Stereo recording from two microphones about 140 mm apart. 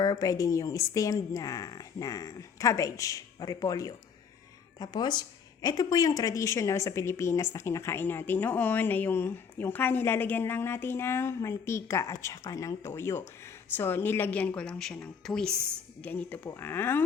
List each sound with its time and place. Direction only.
0.0 s a woman's voice: 25° left (ahead or behind)